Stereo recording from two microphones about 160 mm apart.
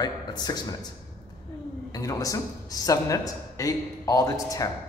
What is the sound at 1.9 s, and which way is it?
Speech, 20° left (ahead or behind).